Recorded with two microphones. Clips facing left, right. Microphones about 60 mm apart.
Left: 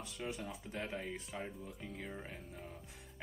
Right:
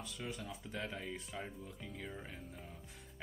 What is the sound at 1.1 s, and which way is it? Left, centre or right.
Speech, centre.